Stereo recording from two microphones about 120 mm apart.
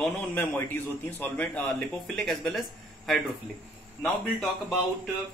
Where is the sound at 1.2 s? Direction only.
10° left (ahead or behind).